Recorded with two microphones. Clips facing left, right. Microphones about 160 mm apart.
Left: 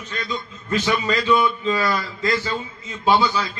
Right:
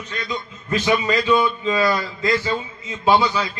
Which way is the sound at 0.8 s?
20° right (ahead or behind).